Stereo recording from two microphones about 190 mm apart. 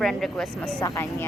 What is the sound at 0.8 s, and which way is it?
Speech, 20° left (ahead or behind).